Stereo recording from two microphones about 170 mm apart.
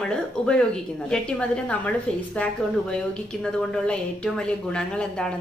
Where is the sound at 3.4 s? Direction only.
5° left (ahead or behind).